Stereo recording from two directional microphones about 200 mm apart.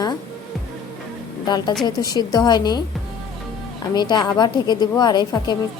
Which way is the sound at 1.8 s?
20° left (ahead or behind).